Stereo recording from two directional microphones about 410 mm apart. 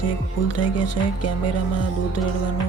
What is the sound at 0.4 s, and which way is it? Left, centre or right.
Music, left.